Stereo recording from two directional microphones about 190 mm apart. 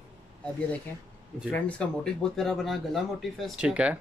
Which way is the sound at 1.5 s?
5° left (ahead or behind).